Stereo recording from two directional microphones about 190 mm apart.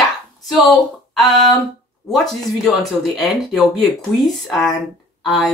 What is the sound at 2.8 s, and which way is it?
Speech, centre (ahead or behind).